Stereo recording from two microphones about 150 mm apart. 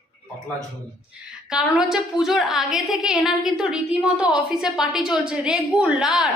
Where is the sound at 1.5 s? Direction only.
5° right (ahead or behind).